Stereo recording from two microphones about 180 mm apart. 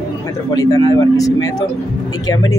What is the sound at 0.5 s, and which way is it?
Speech, 20° left (ahead or behind).